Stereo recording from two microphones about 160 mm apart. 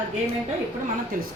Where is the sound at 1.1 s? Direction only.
60° right (ahead or behind).